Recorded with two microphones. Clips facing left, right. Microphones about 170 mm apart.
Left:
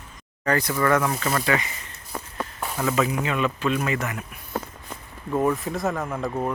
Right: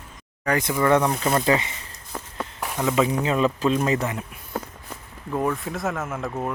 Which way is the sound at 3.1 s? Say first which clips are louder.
Right 3 dB; 30° right (ahead or behind).